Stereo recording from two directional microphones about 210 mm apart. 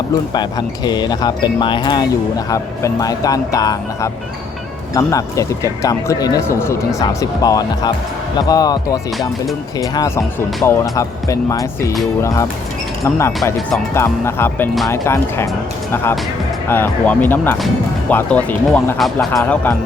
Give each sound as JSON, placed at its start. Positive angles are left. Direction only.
{"t": 0.3, "sound": "speech", "side_deg": 20}
{"t": 13.1, "sound": "speech", "side_deg": 15}
{"t": 16.6, "sound": "speech", "side_deg": 10}
{"t": 19.3, "sound": "speech", "side_deg": 10}